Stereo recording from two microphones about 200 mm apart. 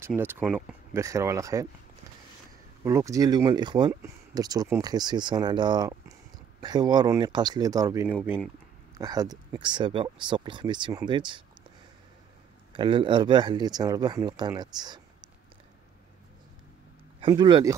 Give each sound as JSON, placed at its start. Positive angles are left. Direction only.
{"t": 0.0, "sound": "speech", "side_deg": -10}
{"t": 2.8, "sound": "speech", "side_deg": -15}
{"t": 12.7, "sound": "speech", "side_deg": -25}
{"t": 17.2, "sound": "speech", "side_deg": -20}